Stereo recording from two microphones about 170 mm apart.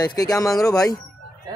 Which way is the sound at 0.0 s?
20° left (ahead or behind).